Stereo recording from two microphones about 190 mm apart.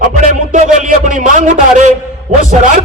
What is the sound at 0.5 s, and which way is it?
A man's voice, 40° right (ahead or behind).